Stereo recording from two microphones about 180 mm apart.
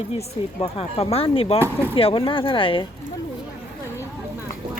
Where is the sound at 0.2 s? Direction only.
35° left (ahead or behind).